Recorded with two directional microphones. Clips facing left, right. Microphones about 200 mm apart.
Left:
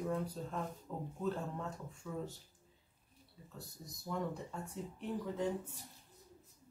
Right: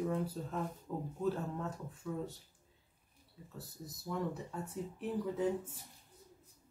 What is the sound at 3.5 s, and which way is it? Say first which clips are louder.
Speech: right 3 dB; 5° right (ahead or behind).